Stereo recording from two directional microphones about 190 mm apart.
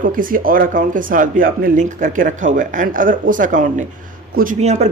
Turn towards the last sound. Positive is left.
turn(degrees=-35)  # may be behind; listen again after turning